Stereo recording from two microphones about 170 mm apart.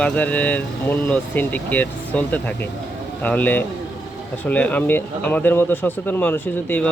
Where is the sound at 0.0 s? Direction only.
10° left (ahead or behind).